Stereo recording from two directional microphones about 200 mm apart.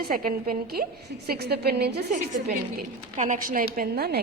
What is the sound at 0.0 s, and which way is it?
A woman's voice, 50° right (ahead or behind).